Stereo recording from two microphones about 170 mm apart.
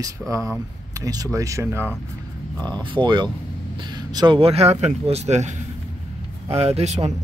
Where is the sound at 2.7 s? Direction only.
30° right (ahead or behind).